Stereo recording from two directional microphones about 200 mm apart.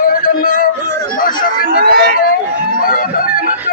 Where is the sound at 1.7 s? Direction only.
50° right (ahead or behind).